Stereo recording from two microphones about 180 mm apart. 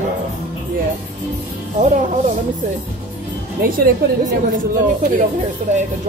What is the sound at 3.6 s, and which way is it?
Speech, 55° right (ahead or behind).